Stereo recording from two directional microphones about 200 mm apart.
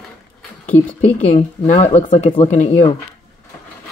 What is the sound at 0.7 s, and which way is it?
Speech, 10° left (ahead or behind).